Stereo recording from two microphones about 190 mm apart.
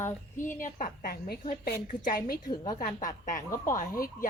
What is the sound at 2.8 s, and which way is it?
A woman's voice, 40° left (ahead or behind).